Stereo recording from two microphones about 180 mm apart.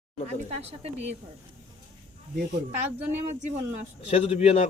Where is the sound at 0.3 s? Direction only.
35° right (ahead or behind).